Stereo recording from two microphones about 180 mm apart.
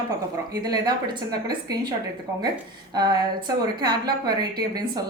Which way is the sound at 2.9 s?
25° right (ahead or behind).